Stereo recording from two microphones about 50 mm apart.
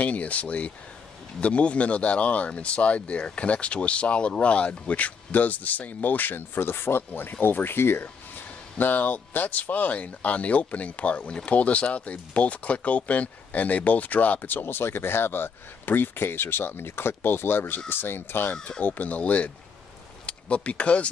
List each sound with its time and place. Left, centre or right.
0.0 s speech: left
8.7 s speech: left
18.5 s speech: left